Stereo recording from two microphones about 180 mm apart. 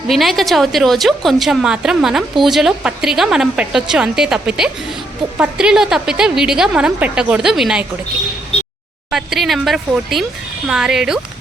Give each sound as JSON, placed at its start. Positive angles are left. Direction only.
{"t": 0.1, "sound": "a woman's voice", "side_deg": 0}
{"t": 8.5, "sound": "a sound", "side_deg": 35}
{"t": 9.0, "sound": "a woman's voice", "side_deg": 0}